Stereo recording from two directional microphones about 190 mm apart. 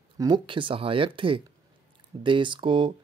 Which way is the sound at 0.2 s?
25° right (ahead or behind).